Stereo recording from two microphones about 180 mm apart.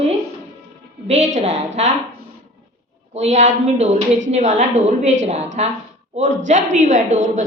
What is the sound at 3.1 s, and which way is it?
A woman's voice, 40° right (ahead or behind).